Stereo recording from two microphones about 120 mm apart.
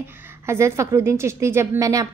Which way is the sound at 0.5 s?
20° right (ahead or behind).